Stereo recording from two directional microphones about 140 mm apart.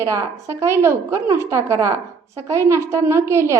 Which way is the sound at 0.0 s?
20° right (ahead or behind).